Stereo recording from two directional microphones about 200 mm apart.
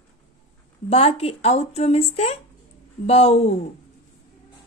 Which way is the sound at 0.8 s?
30° left (ahead or behind).